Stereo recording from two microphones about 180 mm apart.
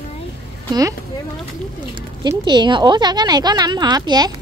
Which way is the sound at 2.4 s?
25° right (ahead or behind).